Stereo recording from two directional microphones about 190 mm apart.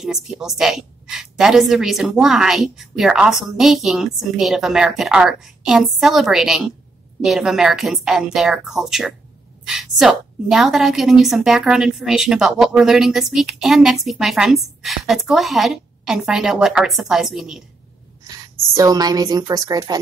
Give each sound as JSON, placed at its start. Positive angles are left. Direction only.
{"t": 0.3, "sound": "a woman's voice", "side_deg": -5}
{"t": 18.8, "sound": "a woman's voice", "side_deg": -20}